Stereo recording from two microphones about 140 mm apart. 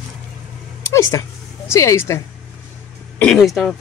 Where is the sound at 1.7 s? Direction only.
20° left (ahead or behind).